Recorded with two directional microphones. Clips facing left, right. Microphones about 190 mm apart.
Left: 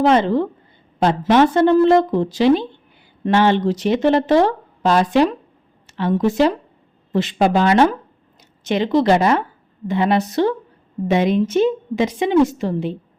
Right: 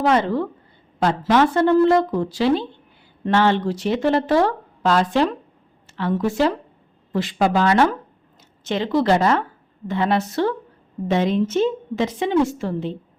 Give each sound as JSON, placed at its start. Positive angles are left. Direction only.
{"t": 0.0, "sound": "speech", "side_deg": 20}